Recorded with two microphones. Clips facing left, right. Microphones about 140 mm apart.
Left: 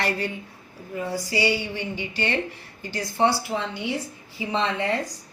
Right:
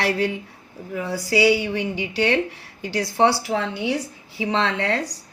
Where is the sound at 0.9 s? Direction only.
85° right.